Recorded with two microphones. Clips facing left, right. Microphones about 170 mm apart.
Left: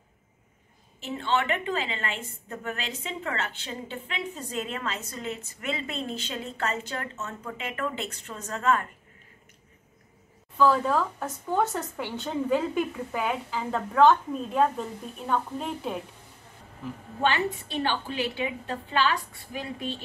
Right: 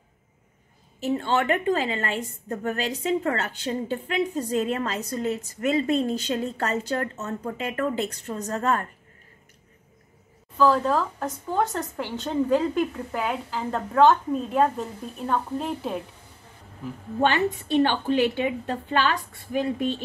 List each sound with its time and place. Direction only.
1.0 s a woman's voice: 40° right (ahead or behind)
10.6 s a woman's voice: centre (ahead or behind)
17.2 s a woman's voice: 50° right (ahead or behind)